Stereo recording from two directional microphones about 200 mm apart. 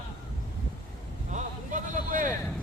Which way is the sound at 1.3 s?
40° right (ahead or behind).